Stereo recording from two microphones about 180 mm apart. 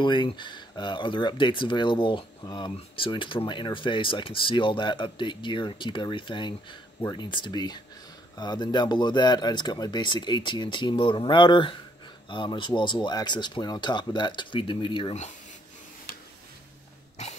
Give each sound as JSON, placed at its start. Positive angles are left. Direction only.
{"t": 0.0, "sound": "speech", "side_deg": 25}